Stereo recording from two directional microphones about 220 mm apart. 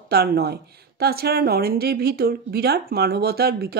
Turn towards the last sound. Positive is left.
turn(degrees=-45)  # may be behind; listen again after turning